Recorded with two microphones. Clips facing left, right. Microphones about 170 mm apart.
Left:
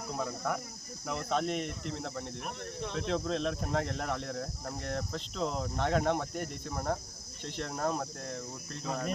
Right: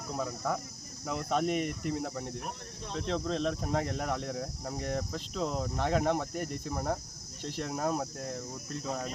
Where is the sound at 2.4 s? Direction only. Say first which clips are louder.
Left 3 dB; 70° left (ahead or behind).